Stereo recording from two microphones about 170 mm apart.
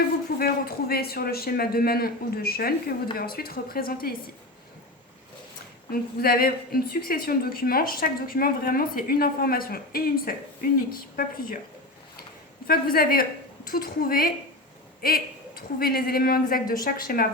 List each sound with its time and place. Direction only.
0.3 s a woman's voice: 65° left (ahead or behind)
5.9 s a woman's voice: 65° left (ahead or behind)
12.6 s a woman's voice: 60° left (ahead or behind)